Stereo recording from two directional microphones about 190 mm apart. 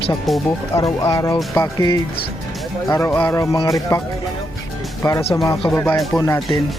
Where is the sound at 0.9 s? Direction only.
30° left (ahead or behind).